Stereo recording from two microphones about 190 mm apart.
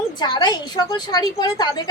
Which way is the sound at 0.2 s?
20° left (ahead or behind).